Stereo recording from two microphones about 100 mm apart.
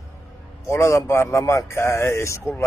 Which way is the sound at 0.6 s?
25° left (ahead or behind).